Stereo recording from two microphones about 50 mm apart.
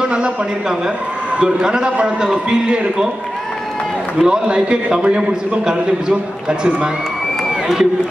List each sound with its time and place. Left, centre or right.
0.0 s a man's voice: centre
4.2 s a man's voice: centre
7.6 s speech: centre